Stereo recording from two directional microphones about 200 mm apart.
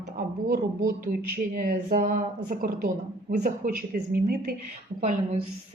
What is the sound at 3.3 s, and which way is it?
Speech, 40° right (ahead or behind).